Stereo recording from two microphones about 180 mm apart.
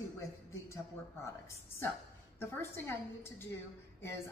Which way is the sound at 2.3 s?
15° left (ahead or behind).